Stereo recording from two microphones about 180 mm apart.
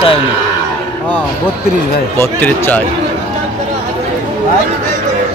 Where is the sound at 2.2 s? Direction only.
10° left (ahead or behind).